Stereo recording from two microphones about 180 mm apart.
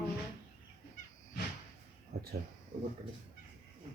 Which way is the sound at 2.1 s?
65° right (ahead or behind).